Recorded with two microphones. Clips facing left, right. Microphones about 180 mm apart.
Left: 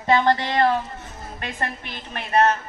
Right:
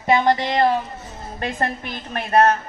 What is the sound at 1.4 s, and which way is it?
A woman's voice, 40° right (ahead or behind).